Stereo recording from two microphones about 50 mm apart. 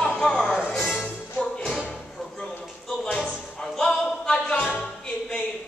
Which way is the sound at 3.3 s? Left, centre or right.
Centre.